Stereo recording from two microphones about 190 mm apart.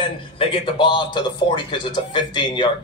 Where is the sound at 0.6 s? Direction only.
25° left (ahead or behind).